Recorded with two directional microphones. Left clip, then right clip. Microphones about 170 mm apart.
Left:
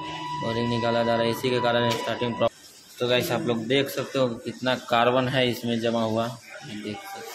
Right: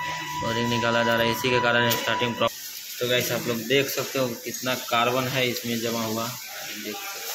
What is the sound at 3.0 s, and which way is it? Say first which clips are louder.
Speech: left 1 dB; 15° left (ahead or behind).